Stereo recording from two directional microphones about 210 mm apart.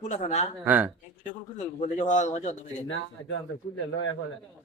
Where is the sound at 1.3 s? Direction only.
35° left (ahead or behind).